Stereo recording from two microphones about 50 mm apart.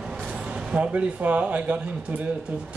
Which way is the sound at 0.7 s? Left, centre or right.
Right.